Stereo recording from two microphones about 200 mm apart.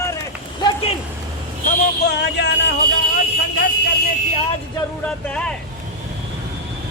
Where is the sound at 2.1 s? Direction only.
60° left (ahead or behind).